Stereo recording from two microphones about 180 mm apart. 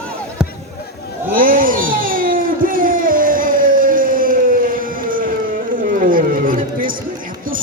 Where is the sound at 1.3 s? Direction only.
50° right (ahead or behind).